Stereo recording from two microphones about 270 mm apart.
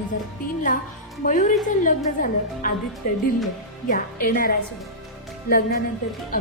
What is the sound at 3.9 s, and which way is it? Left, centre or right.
A woman's voice, left.